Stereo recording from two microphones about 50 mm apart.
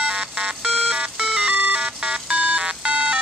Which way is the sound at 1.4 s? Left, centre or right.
Right.